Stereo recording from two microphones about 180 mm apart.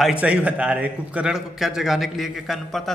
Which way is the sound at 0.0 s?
5° right (ahead or behind).